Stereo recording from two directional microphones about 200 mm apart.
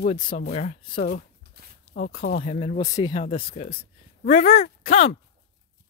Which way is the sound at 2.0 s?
50° left (ahead or behind).